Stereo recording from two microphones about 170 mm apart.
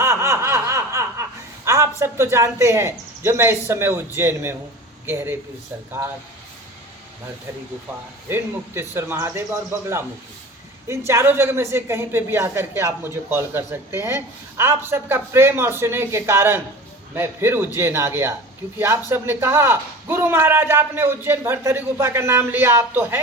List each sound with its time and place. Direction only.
0.0 s snicker: 15° right (ahead or behind)
1.6 s a sound: 15° right (ahead or behind)
2.0 s a man's voice: 15° right (ahead or behind)
8.3 s a man's voice: 15° right (ahead or behind)